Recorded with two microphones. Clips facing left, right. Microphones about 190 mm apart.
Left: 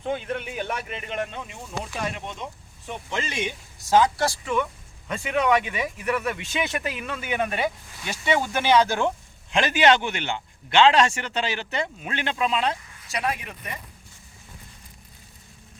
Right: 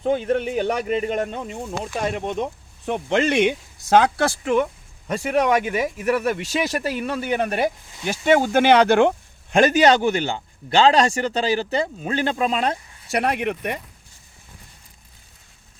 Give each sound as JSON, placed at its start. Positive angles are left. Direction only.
{"t": 0.0, "sound": "speech", "side_deg": -40}
{"t": 4.6, "sound": "a man's voice", "side_deg": -40}
{"t": 9.5, "sound": "a man's voice", "side_deg": -45}
{"t": 13.1, "sound": "speech", "side_deg": -65}